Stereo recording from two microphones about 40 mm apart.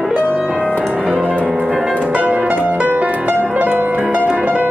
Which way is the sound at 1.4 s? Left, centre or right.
Right.